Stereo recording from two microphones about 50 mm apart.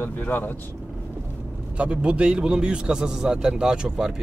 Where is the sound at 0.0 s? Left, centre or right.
Left.